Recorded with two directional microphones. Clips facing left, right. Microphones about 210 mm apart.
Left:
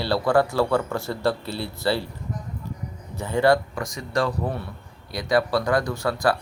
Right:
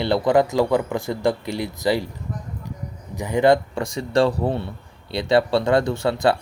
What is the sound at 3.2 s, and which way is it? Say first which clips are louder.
Speech: right 3 dB; 15° right (ahead or behind).